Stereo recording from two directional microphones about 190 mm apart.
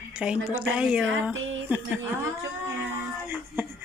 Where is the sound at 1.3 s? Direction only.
80° right.